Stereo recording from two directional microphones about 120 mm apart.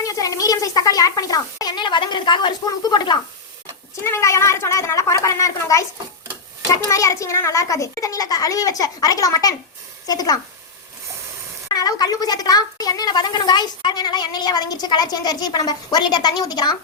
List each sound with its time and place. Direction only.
0.0 s speech: 30° left (ahead or behind)
3.9 s a child's voice: 25° left (ahead or behind)
6.8 s a child's voice: 25° left (ahead or behind)
11.7 s speech: 35° left (ahead or behind)